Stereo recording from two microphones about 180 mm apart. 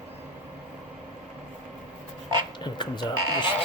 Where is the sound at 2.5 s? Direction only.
25° left (ahead or behind).